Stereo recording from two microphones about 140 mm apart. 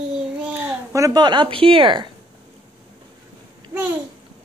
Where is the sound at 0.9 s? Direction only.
25° right (ahead or behind).